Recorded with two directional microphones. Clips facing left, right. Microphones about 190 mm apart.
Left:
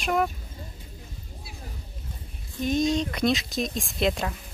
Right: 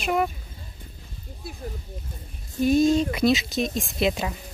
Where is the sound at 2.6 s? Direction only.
5° right (ahead or behind).